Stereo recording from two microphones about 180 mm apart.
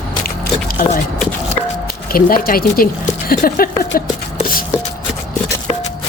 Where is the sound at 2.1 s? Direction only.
55° left (ahead or behind).